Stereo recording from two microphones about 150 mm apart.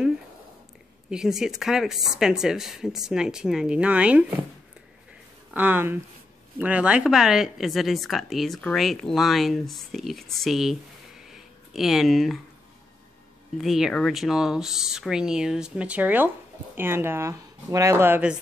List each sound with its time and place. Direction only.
1.1 s speech: 5° right (ahead or behind)
5.5 s speech: 10° right (ahead or behind)
13.6 s speech: centre (ahead or behind)